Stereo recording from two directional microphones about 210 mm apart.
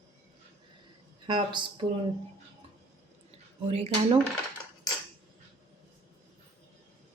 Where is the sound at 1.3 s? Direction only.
20° right (ahead or behind).